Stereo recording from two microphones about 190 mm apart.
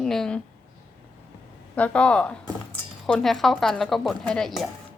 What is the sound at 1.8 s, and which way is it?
Speech, 5° left (ahead or behind).